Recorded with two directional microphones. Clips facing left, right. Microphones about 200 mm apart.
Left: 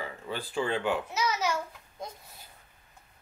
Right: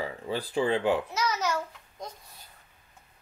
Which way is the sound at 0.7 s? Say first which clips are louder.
Right 4 dB; 30° right (ahead or behind).